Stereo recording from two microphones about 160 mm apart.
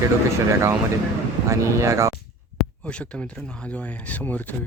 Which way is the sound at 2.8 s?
5° left (ahead or behind).